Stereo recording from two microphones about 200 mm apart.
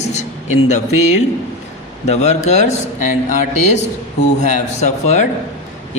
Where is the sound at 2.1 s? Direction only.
35° left (ahead or behind).